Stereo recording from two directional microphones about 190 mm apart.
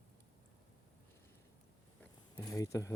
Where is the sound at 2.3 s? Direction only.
20° left (ahead or behind).